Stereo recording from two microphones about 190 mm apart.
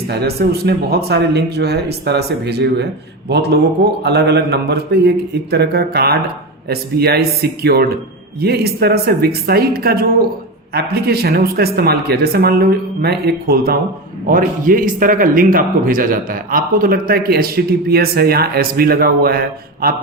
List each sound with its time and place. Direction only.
0.1 s a man's voice: 60° right (ahead or behind)